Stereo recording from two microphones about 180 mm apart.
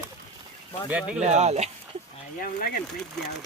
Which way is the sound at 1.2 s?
40° right (ahead or behind).